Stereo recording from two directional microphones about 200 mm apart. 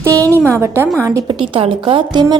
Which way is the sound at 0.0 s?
15° right (ahead or behind).